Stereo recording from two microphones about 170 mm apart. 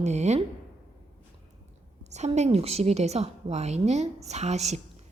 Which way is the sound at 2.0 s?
40° right (ahead or behind).